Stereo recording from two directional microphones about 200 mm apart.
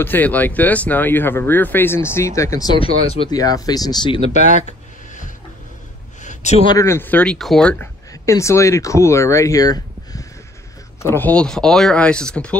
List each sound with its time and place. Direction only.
0.0 s speech: 10° left (ahead or behind); by 4.6 s 35° left (ahead or behind)
6.7 s speech: 15° left (ahead or behind)
8.1 s speech: 15° left (ahead or behind)